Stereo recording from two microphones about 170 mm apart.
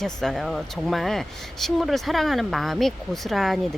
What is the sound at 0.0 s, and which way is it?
Speech, 5° left (ahead or behind).